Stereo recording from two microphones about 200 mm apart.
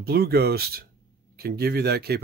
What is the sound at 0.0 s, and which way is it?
Speech, 50° right (ahead or behind).